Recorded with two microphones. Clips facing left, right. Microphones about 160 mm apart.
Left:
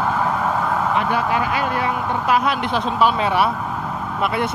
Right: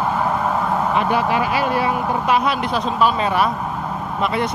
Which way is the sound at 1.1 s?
20° right (ahead or behind).